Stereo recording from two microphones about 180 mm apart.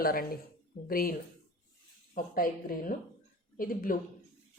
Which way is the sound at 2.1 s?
50° left (ahead or behind).